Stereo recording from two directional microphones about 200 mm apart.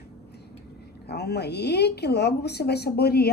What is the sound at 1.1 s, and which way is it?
Speech, 55° left (ahead or behind).